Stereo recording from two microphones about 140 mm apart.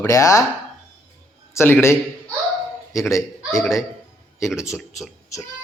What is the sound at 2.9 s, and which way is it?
Speech, 20° left (ahead or behind).